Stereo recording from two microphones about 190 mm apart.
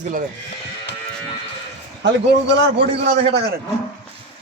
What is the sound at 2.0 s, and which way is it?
Speech, 70° right (ahead or behind).